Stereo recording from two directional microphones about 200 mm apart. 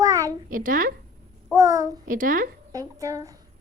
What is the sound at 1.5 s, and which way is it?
Speech, 15° right (ahead or behind).